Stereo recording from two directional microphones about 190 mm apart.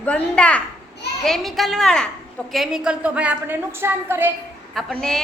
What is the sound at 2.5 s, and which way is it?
A woman's voice, centre (ahead or behind).